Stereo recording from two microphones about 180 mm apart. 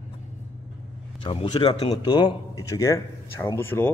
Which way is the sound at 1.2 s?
30° left (ahead or behind).